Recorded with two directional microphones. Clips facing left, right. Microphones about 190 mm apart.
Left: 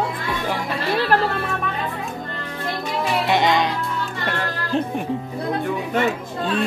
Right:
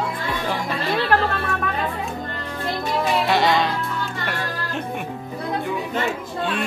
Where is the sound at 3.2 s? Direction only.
20° left (ahead or behind).